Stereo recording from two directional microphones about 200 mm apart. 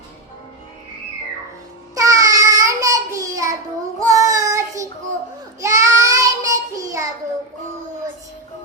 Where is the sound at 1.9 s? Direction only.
15° right (ahead or behind).